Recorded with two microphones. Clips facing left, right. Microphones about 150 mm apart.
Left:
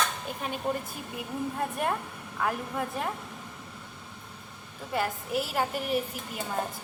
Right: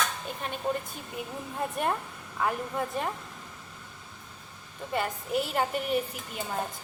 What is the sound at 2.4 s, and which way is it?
Speech, centre (ahead or behind).